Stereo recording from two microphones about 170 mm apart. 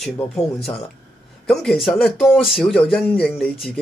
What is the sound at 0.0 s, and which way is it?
Speech, centre (ahead or behind).